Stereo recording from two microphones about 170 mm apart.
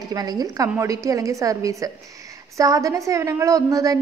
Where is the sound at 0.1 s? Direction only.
25° right (ahead or behind).